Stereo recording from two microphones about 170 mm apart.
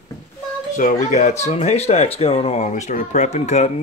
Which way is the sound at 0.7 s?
50° left (ahead or behind).